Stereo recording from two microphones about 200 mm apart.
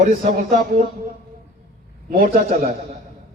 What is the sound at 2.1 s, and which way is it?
Speech, 45° right (ahead or behind).